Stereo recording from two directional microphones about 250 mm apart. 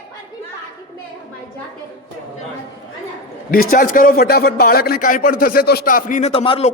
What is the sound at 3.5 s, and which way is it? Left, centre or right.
A man's voice, left.